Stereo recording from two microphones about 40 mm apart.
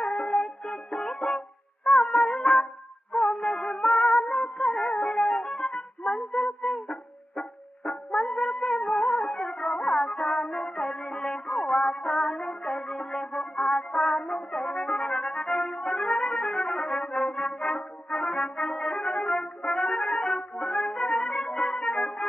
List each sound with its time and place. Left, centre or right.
0.0 s music: left